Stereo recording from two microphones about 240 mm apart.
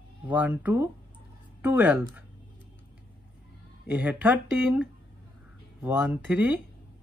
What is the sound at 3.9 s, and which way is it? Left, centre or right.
Speech, centre.